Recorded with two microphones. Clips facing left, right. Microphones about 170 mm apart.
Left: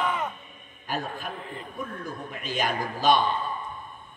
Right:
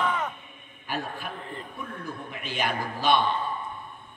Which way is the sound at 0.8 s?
45° left (ahead or behind).